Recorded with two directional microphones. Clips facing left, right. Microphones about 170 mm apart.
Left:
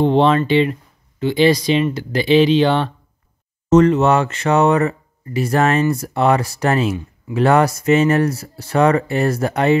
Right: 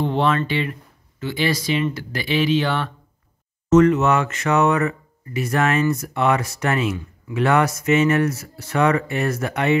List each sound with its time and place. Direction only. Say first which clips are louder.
0.0 s speech: left 6 dB; 25° left (ahead or behind)